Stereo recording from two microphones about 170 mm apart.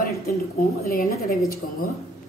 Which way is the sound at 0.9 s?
60° left (ahead or behind).